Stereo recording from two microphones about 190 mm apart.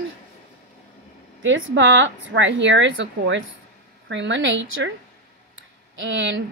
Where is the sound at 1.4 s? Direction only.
75° right (ahead or behind).